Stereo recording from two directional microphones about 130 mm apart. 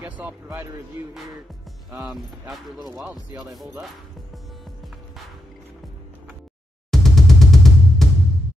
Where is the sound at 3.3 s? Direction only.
25° right (ahead or behind).